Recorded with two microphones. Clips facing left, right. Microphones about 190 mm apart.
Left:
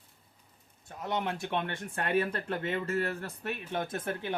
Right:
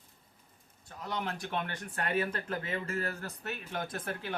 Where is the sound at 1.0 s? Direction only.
25° left (ahead or behind).